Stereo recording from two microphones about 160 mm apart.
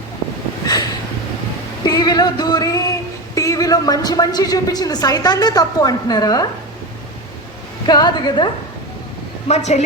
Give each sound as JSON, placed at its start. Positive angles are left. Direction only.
{"t": 0.6, "sound": "a sound", "side_deg": 25}
{"t": 1.8, "sound": "music", "side_deg": 25}
{"t": 3.3, "sound": "a woman's voice", "side_deg": 20}
{"t": 7.9, "sound": "a woman's voice", "side_deg": 25}
{"t": 9.5, "sound": "a woman's voice", "side_deg": 45}